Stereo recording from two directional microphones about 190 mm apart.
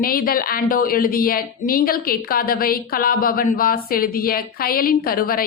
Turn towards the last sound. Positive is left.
turn(degrees=50)  # may be behind; listen again after turning